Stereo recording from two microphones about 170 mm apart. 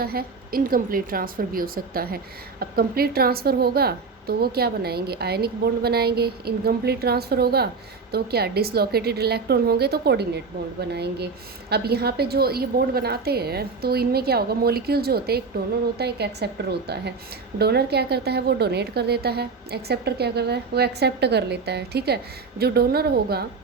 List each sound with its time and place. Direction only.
0.0 s a woman's voice: 60° right (ahead or behind)